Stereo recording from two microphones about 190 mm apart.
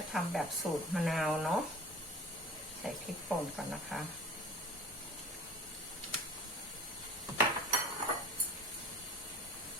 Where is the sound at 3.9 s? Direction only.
Centre (ahead or behind).